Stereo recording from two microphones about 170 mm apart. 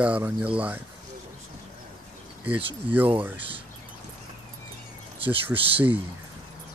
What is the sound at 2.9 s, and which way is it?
Speech, 10° right (ahead or behind).